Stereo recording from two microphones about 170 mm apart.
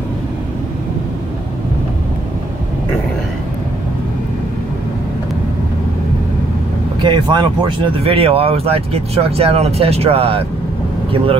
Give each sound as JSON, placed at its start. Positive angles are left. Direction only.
{"t": 7.0, "sound": "speech", "side_deg": -25}